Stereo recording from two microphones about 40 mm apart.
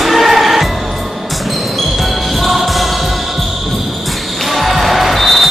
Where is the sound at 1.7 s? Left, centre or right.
Centre.